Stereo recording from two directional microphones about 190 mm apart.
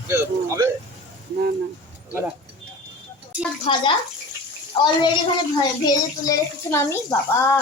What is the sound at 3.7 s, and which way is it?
Speech, 25° left (ahead or behind).